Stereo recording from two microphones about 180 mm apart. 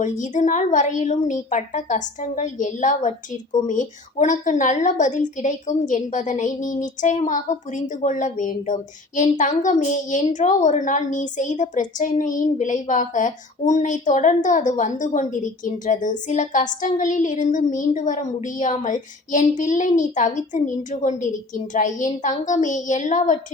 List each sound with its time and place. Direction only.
0.0 s a woman's voice: 45° left (ahead or behind)